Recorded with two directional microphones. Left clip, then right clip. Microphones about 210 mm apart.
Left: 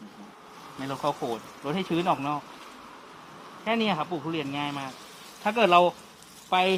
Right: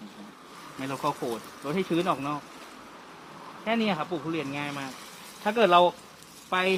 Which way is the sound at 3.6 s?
50° left (ahead or behind).